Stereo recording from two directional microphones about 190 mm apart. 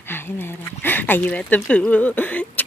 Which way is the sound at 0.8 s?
10° left (ahead or behind).